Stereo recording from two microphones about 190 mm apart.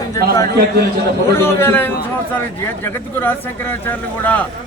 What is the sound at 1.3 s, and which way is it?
A man's voice, 15° left (ahead or behind).